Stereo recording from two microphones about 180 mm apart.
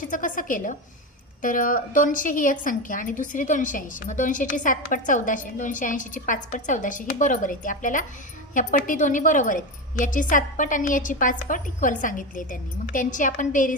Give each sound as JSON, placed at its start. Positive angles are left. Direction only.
{"t": 0.0, "sound": "a woman's voice", "side_deg": 45}